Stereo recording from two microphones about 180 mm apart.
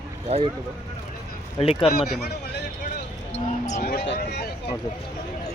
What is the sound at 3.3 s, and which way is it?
Basketball bounce, 40° left (ahead or behind).